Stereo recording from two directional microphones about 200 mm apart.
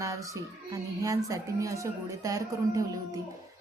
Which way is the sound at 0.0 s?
15° right (ahead or behind).